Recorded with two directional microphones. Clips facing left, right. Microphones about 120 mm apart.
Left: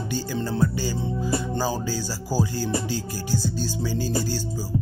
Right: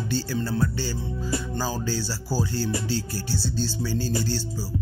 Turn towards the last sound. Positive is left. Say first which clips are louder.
# left 1 dB
turn(degrees=15)  # may be behind; listen again after turning